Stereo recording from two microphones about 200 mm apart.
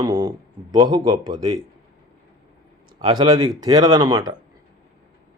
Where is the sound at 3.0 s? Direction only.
20° right (ahead or behind).